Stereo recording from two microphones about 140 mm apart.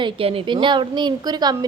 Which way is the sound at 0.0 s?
40° right (ahead or behind).